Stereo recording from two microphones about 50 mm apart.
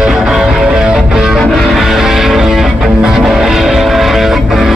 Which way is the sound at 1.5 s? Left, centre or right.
Centre.